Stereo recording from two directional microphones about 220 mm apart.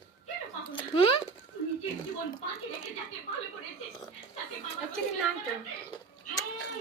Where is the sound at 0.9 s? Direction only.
25° left (ahead or behind).